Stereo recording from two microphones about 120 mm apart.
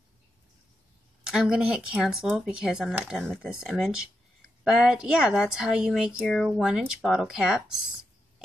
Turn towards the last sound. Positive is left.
turn(degrees=-5)  # may be behind; listen again after turning